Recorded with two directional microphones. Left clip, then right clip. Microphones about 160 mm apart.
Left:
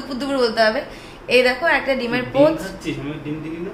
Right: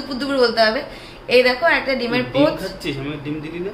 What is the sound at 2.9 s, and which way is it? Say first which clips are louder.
Speech: right 1 dB; 85° right.